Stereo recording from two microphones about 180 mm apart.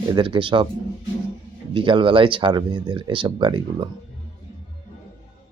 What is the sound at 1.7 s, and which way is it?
Speech, 30° right (ahead or behind).